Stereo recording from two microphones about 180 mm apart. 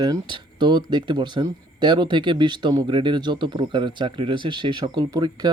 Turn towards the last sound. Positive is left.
turn(degrees=-25)  # may be behind; listen again after turning